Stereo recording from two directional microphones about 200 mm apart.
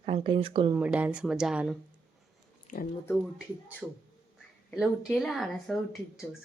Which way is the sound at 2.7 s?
45° left (ahead or behind).